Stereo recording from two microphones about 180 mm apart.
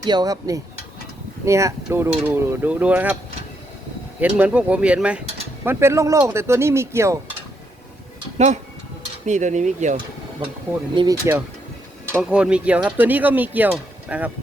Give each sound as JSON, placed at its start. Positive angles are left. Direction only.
{"t": 0.1, "sound": "speech", "side_deg": -20}
{"t": 4.2, "sound": "speech", "side_deg": -10}
{"t": 9.2, "sound": "speech", "side_deg": -40}
{"t": 10.9, "sound": "speech", "side_deg": -20}
{"t": 12.1, "sound": "speech", "side_deg": -5}